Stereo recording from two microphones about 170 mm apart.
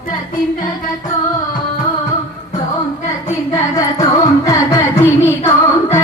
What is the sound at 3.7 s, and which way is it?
Music, 20° left (ahead or behind).